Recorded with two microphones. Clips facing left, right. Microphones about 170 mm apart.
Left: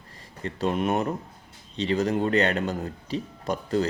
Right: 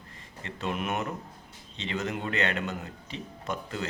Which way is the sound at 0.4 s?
35° left (ahead or behind).